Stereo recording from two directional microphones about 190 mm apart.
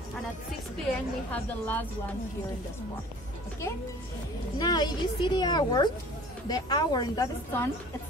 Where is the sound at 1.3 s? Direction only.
10° left (ahead or behind).